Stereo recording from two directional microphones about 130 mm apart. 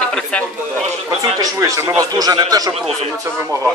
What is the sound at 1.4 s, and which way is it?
Speech, 25° right (ahead or behind).